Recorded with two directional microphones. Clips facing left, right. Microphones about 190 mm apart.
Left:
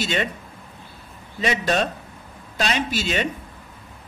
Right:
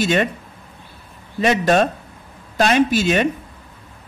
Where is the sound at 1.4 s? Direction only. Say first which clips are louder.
Right 6 dB; 50° right (ahead or behind).